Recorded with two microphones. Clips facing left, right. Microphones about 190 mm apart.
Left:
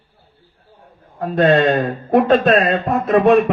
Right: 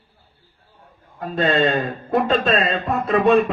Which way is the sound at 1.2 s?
65° left (ahead or behind).